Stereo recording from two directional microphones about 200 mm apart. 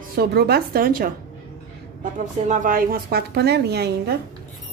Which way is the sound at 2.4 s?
45° right (ahead or behind).